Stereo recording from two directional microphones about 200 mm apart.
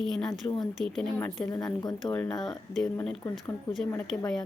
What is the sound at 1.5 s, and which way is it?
Speech, 15° left (ahead or behind).